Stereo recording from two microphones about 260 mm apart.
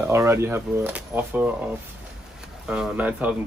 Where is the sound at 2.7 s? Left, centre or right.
Centre.